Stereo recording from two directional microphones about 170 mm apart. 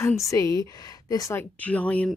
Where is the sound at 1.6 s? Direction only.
10° left (ahead or behind).